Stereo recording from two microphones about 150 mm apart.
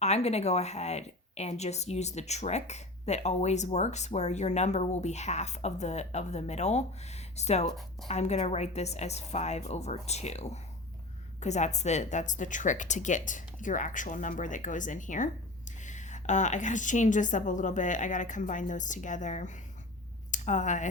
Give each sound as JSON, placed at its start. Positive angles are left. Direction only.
{"t": 0.0, "sound": "speech", "side_deg": 45}